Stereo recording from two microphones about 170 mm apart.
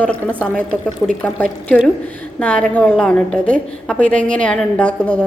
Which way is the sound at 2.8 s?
5° left (ahead or behind).